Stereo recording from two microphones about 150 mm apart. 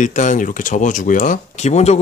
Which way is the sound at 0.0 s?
55° left (ahead or behind).